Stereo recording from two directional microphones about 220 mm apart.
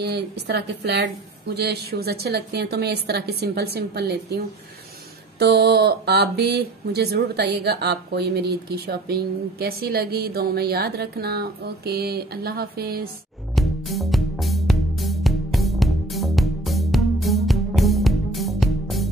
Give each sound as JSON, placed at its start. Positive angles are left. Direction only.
{"t": 0.0, "sound": "speech", "side_deg": -50}
{"t": 5.4, "sound": "speech", "side_deg": -50}
{"t": 13.6, "sound": "music", "side_deg": 0}